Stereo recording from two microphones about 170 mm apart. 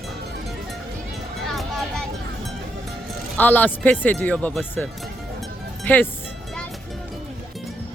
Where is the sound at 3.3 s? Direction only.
10° left (ahead or behind).